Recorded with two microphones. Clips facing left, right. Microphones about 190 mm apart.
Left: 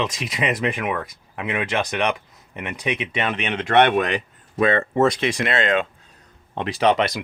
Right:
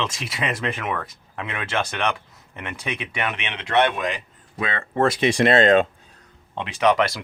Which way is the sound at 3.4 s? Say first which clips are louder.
Left 4 dB; 45° left (ahead or behind).